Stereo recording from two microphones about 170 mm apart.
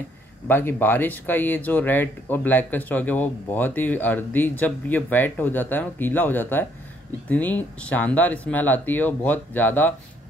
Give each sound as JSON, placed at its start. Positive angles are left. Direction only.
{"t": 0.5, "sound": "speech", "side_deg": 10}